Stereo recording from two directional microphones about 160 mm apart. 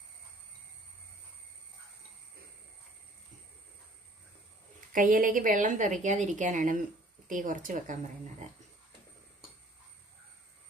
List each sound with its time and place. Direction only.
4.9 s a woman's voice: 60° right (ahead or behind)